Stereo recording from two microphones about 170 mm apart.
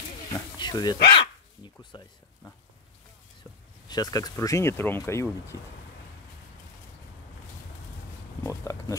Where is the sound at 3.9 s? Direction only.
20° left (ahead or behind).